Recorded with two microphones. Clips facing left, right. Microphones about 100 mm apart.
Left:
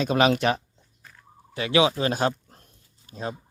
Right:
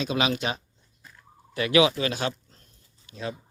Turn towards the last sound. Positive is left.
turn(degrees=40)  # may be behind; listen again after turning